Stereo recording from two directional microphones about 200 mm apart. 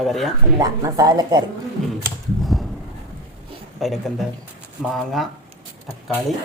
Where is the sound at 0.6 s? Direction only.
20° right (ahead or behind).